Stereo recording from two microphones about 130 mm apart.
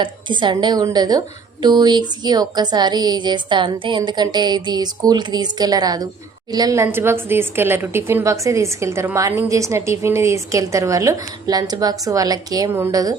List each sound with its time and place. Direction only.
0.0 s a woman's voice: 35° right (ahead or behind)